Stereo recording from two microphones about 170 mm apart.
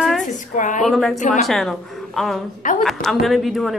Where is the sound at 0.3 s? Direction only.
50° left (ahead or behind).